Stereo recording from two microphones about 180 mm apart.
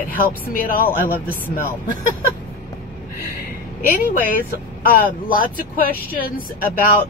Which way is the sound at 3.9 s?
50° left (ahead or behind).